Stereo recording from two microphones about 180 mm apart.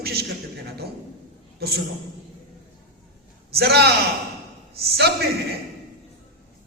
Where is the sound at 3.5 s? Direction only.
60° right (ahead or behind).